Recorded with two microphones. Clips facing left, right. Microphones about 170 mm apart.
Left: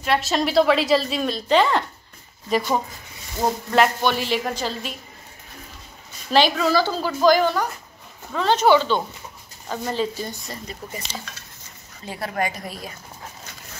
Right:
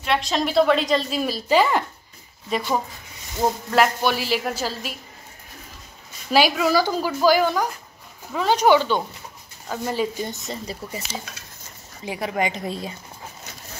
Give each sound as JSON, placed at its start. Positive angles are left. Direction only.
{"t": 0.0, "sound": "a woman's voice", "side_deg": 5}
{"t": 6.3, "sound": "a woman's voice", "side_deg": -10}
{"t": 12.0, "sound": "a woman's voice", "side_deg": -15}